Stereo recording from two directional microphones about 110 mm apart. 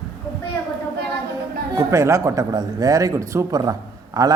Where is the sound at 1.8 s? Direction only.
25° right (ahead or behind).